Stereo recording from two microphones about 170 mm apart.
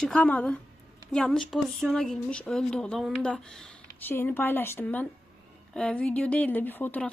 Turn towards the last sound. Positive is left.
turn(degrees=10)  # may be behind; listen again after turning